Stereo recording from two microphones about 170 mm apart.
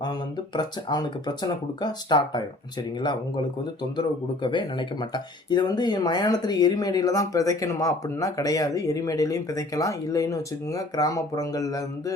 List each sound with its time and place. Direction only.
0.0 s speech: 25° left (ahead or behind)
4.4 s speech: 25° left (ahead or behind)